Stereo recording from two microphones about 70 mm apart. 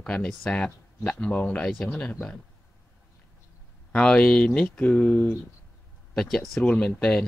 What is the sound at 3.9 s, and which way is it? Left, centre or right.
Speech, centre.